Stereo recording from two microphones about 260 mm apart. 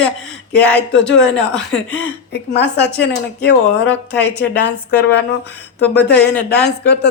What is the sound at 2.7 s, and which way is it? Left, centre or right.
Speech, left.